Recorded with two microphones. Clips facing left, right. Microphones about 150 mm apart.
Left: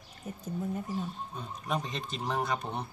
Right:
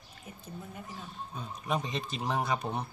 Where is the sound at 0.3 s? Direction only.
40° left (ahead or behind).